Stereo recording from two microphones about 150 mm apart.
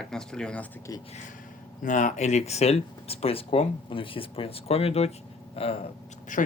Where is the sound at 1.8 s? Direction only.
60° left (ahead or behind); by 5.8 s 40° left (ahead or behind).